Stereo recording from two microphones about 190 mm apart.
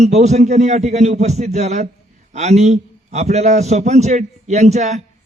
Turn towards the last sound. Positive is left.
turn(degrees=-35)  # may be behind; listen again after turning